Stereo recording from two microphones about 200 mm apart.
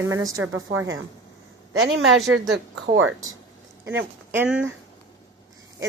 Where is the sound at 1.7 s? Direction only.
85° right.